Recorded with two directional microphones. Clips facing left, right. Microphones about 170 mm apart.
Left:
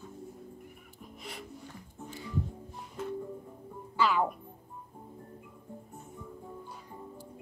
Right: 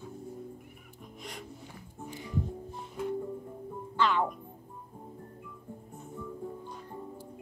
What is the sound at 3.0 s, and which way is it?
Music, 10° right (ahead or behind).